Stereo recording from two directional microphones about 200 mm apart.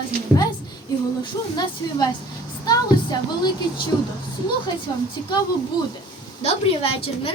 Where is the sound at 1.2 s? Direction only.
20° left (ahead or behind).